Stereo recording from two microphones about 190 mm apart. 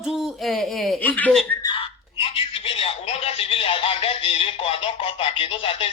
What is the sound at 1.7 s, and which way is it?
Speech, 30° left (ahead or behind).